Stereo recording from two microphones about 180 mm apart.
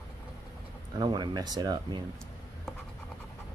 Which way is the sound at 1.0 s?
25° right (ahead or behind).